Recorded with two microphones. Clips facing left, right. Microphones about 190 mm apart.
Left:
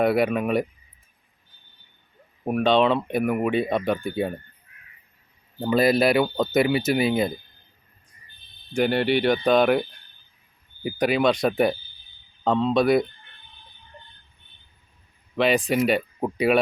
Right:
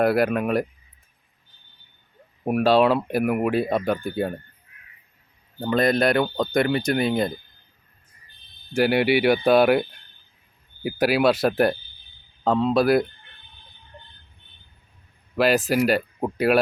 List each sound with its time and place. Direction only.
0.0 s speech: centre (ahead or behind)
2.4 s speech: 10° right (ahead or behind)
5.5 s speech: 5° left (ahead or behind)
8.7 s speech: 10° right (ahead or behind)
10.8 s speech: 5° right (ahead or behind)
15.4 s speech: 5° right (ahead or behind)